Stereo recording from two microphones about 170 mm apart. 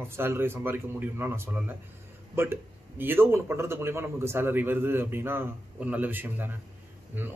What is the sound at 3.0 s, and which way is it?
Speech, 10° right (ahead or behind).